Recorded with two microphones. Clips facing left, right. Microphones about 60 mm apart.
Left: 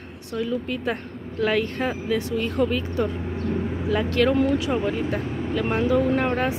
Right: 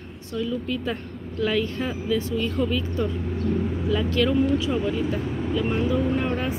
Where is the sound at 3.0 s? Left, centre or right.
Left.